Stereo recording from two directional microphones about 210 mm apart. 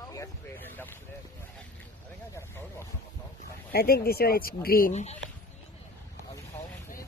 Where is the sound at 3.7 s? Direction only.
45° left (ahead or behind).